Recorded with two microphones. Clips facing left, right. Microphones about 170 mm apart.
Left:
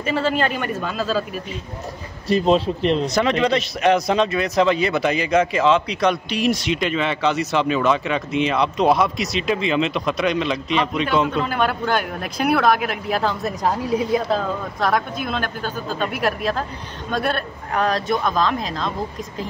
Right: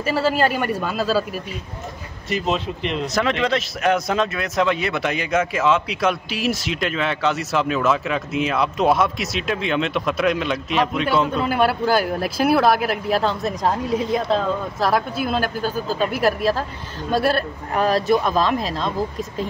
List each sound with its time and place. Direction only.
0.1 s speech: 5° right (ahead or behind)
2.2 s speech: 35° left (ahead or behind)
3.2 s speech: centre (ahead or behind)
11.9 s speech: 35° right (ahead or behind)
12.4 s speech: 5° right (ahead or behind)
15.3 s speech: 35° right (ahead or behind)
15.7 s speech: 5° right (ahead or behind)
17.7 s speech: 5° right (ahead or behind)